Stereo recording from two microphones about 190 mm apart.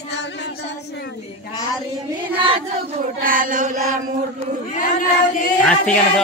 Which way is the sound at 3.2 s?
45° right (ahead or behind).